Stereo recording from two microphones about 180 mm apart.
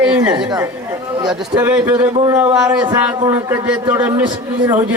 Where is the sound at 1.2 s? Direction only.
20° right (ahead or behind).